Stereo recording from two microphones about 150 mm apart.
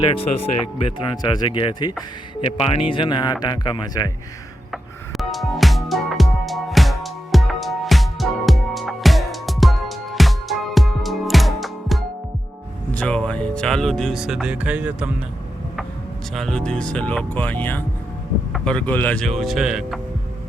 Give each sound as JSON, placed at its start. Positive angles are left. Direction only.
{"t": 0.0, "sound": "speech", "side_deg": 40}
{"t": 1.1, "sound": "speech", "side_deg": 25}
{"t": 4.7, "sound": "music", "side_deg": 0}
{"t": 16.3, "sound": "speech", "side_deg": 5}